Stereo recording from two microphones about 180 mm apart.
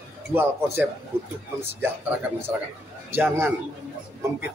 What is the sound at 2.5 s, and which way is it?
Speech, 10° right (ahead or behind).